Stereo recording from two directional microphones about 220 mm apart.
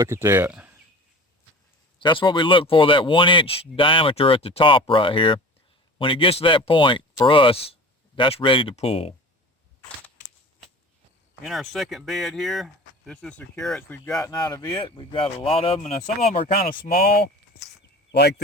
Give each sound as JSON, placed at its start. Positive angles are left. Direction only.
{"t": 0.0, "sound": "speech", "side_deg": -10}
{"t": 2.0, "sound": "speech", "side_deg": 20}
{"t": 11.4, "sound": "speech", "side_deg": 0}
{"t": 16.5, "sound": "speech", "side_deg": 40}